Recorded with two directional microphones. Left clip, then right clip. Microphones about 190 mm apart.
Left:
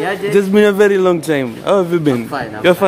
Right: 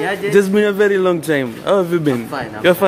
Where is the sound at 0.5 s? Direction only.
15° left (ahead or behind).